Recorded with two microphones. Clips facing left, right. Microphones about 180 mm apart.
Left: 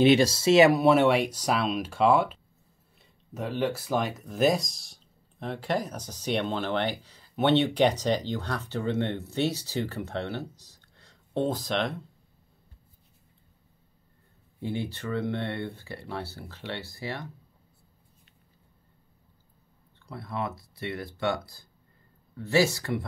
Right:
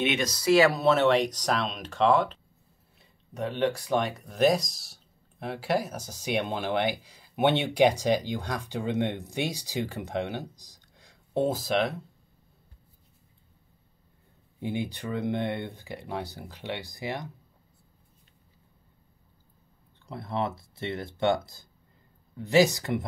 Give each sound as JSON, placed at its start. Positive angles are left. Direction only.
{"t": 0.0, "sound": "speech", "side_deg": 30}
{"t": 14.6, "sound": "speech", "side_deg": -15}
{"t": 20.1, "sound": "speech", "side_deg": -25}